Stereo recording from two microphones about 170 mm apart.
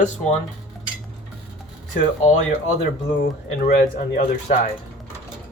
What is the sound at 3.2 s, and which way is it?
Speech, 55° left (ahead or behind).